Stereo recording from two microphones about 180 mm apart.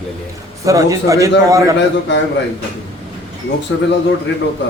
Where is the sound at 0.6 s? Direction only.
20° right (ahead or behind).